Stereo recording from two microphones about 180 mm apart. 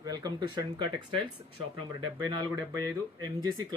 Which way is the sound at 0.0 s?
20° right (ahead or behind).